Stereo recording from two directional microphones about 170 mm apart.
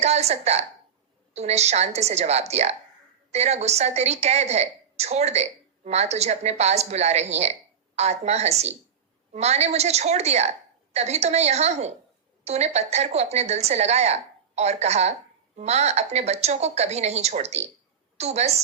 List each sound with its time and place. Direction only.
0.0 s a woman's voice: 40° right (ahead or behind)